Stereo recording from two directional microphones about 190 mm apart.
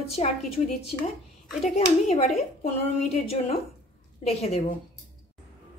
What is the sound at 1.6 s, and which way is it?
A woman's voice, 35° left (ahead or behind).